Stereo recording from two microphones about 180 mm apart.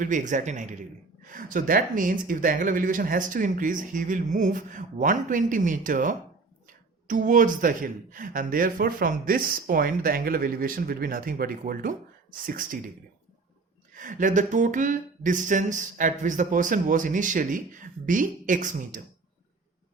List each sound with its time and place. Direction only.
0.0 s speech: 45° right (ahead or behind)
13.9 s speech: 45° right (ahead or behind)